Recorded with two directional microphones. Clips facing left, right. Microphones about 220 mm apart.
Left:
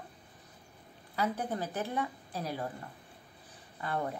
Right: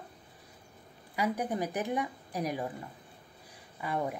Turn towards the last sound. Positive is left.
turn(degrees=-10)  # may be behind; listen again after turning